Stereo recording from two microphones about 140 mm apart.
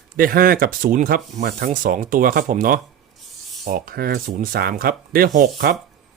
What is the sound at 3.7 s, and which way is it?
Speech, 90° right.